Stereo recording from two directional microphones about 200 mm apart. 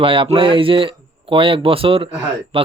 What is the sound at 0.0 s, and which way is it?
Speech, 25° right (ahead or behind).